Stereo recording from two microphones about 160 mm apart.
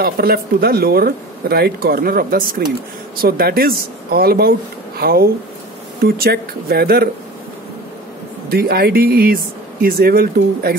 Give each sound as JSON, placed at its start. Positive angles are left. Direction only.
{"t": 0.0, "sound": "speech", "side_deg": -75}
{"t": 8.5, "sound": "speech", "side_deg": -80}